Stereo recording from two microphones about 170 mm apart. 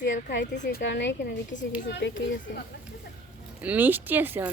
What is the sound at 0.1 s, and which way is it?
Speech, 90° left.